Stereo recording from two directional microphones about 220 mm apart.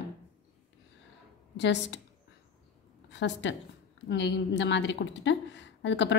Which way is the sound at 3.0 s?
55° left (ahead or behind).